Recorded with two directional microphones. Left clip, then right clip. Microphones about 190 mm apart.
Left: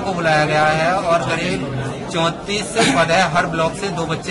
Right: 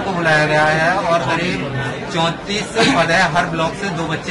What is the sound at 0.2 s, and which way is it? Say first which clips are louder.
Speech: right 1 dB; 30° left (ahead or behind).